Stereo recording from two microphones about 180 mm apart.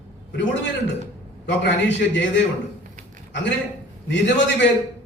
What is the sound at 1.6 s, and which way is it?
Speech, 80° left.